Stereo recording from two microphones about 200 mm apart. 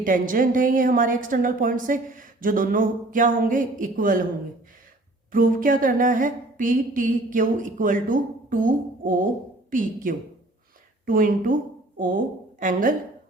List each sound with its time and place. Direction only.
0.0 s a woman's voice: 40° right (ahead or behind)
5.3 s a sound: 45° right (ahead or behind)
9.6 s a woman's voice: 40° right (ahead or behind)